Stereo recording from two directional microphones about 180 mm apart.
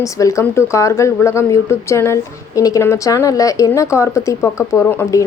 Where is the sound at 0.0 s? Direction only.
15° left (ahead or behind).